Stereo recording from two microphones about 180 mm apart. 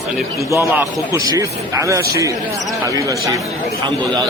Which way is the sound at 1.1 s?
15° right (ahead or behind).